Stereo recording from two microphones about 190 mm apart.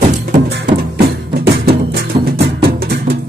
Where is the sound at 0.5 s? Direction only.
60° right (ahead or behind).